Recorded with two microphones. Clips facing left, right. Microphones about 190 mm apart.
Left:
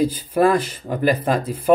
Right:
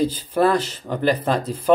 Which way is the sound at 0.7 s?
10° left (ahead or behind).